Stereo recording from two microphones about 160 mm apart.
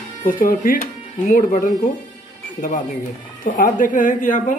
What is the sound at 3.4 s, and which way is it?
Speech, 60° left (ahead or behind).